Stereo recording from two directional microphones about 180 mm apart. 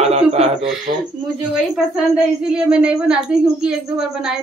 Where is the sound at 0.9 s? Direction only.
50° right (ahead or behind).